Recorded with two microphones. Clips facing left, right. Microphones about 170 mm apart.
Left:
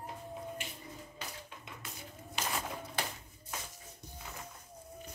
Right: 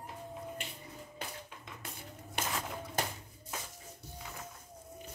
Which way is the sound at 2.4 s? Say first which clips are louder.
Right 1 dB; 55° right (ahead or behind).